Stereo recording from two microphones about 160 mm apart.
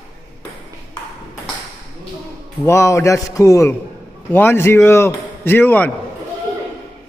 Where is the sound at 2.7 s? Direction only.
15° left (ahead or behind).